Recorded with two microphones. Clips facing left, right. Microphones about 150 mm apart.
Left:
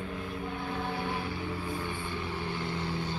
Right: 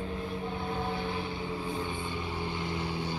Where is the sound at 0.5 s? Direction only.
25° right (ahead or behind).